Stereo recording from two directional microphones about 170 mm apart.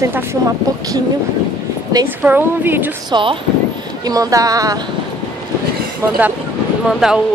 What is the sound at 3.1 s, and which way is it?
Speech, 30° right (ahead or behind).